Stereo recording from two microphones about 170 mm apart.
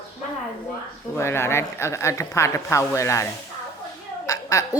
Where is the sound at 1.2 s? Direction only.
15° left (ahead or behind).